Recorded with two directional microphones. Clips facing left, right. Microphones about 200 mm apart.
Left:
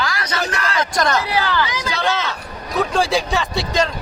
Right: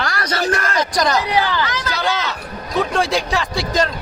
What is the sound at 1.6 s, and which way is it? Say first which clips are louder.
Speech: right 1 dB; 15° left (ahead or behind).